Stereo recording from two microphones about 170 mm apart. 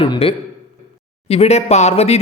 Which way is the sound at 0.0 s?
30° left (ahead or behind).